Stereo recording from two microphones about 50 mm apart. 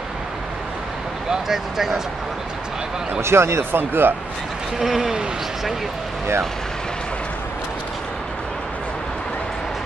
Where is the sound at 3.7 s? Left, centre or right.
Right.